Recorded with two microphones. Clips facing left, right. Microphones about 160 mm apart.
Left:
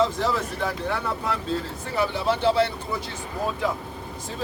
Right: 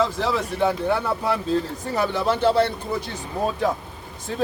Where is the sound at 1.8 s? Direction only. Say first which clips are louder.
Right 2 dB; 40° right (ahead or behind).